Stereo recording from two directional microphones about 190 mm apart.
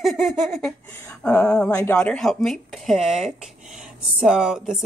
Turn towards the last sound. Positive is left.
turn(degrees=-5)  # may be behind; listen again after turning